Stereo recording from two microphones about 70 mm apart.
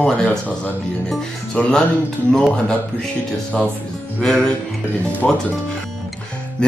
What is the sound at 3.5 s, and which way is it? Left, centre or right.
Speech, centre.